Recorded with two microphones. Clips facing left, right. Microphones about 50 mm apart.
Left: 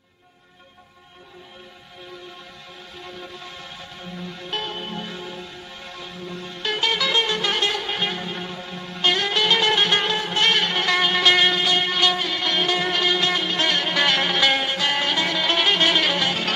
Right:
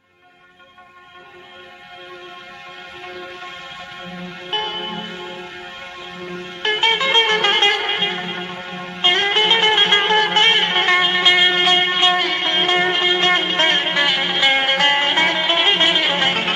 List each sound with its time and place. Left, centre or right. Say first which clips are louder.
4.5 s music: right 6 dB; right
5.0 s music: right 3 dB; right
10.1 s music: right 9 dB; right
10.4 s music: right 4 dB; right
11.0 s music: left 1 dB; right
11.5 s music: right 5 dB; right
12.2 s music: right 4 dB; right
13.9 s music: right 2 dB; centre
14.6 s music: right 6 dB; right
16.2 s music: right 4 dB; right